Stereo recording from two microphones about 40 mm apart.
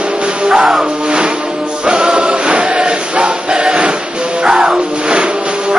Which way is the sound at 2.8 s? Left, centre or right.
Right.